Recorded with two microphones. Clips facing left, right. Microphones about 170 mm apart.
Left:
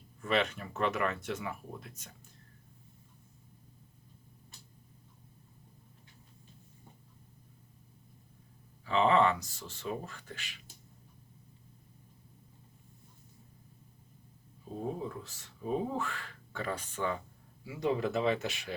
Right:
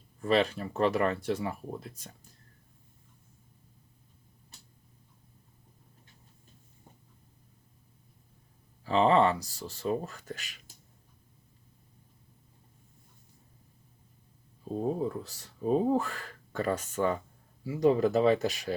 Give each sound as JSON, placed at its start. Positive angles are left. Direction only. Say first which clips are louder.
{"t": 0.2, "sound": "speech", "louder": "right 5 dB", "side_deg": -35}
{"t": 8.8, "sound": "speech", "louder": "right 3 dB", "side_deg": -35}
{"t": 14.8, "sound": "speech", "louder": "right 6 dB", "side_deg": -40}